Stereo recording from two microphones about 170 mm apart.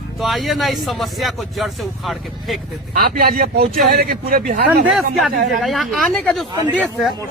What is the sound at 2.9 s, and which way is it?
Speech, 60° right (ahead or behind).